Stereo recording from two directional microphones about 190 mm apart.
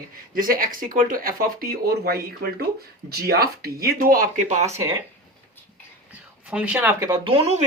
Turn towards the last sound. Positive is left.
turn(degrees=-35)  # may be behind; listen again after turning